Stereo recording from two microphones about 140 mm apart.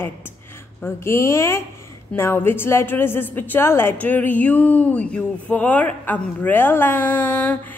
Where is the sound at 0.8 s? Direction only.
20° left (ahead or behind).